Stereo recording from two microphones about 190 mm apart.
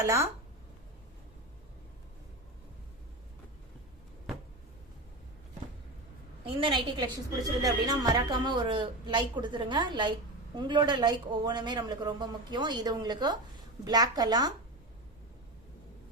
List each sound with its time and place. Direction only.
0.0 s speech: 15° right (ahead or behind)
6.4 s speech: 30° right (ahead or behind)